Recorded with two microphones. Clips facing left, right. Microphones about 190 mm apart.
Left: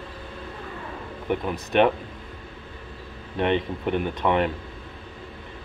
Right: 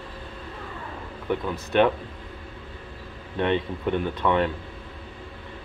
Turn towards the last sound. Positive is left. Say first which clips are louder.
# even
turn(degrees=15)  # may be behind; listen again after turning